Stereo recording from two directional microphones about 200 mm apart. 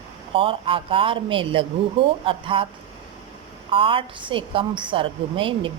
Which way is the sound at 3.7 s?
25° right (ahead or behind).